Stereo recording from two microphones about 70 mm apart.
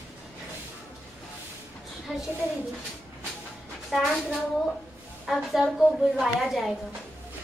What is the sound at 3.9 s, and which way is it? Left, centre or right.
A woman's voice, centre.